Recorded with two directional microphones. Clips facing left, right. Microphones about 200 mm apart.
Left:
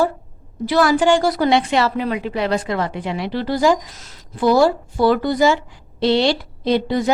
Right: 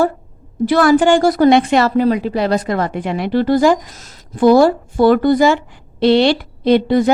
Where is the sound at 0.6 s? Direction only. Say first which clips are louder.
Right 4 dB; 50° right (ahead or behind).